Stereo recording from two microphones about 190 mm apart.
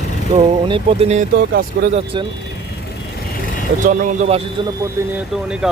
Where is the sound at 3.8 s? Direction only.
35° right (ahead or behind).